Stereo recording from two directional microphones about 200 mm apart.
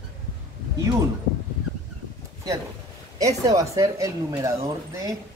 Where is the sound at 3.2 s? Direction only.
15° right (ahead or behind).